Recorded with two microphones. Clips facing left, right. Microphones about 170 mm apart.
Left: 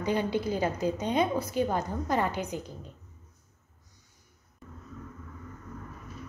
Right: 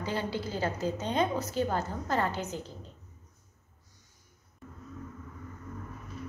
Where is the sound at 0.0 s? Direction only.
15° left (ahead or behind).